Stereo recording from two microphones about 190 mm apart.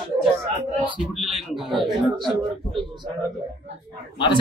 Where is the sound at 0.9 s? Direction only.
Centre (ahead or behind).